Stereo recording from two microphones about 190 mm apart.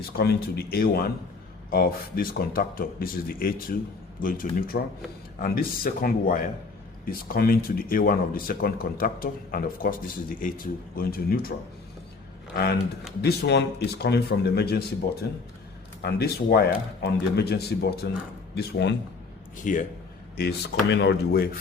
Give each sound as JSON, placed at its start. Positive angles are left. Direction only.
{"t": 0.0, "sound": "a man's voice", "side_deg": 55}
{"t": 13.2, "sound": "a man's voice", "side_deg": 60}
{"t": 19.6, "sound": "speech", "side_deg": 45}
{"t": 20.3, "sound": "a man's voice", "side_deg": 55}